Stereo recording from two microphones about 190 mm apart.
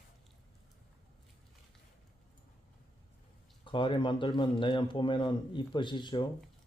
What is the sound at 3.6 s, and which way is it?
Speech, 25° left (ahead or behind).